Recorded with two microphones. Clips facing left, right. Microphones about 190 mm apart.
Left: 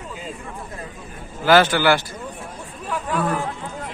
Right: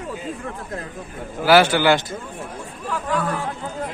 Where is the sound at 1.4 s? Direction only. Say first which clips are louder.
Right 1 dB; 10° right (ahead or behind).